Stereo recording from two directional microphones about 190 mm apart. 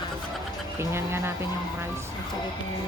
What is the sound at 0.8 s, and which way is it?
Speech, 15° right (ahead or behind).